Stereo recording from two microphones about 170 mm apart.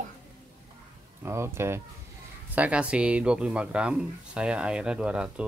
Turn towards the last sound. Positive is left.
turn(degrees=-5)  # may be behind; listen again after turning